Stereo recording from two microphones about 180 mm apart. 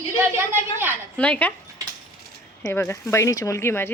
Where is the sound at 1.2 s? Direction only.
10° left (ahead or behind).